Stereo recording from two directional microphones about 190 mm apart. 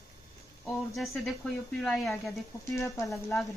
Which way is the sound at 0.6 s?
Centre (ahead or behind).